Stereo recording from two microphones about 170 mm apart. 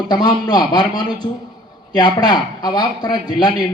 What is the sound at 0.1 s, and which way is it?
A man's voice, 25° left (ahead or behind).